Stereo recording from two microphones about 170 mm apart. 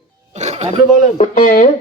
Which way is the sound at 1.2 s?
55° left (ahead or behind).